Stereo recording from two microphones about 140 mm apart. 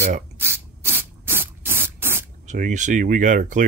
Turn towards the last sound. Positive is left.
turn(degrees=-65)  # may be behind; listen again after turning